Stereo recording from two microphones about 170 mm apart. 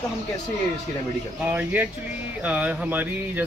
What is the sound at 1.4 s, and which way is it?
Speech, 10° right (ahead or behind).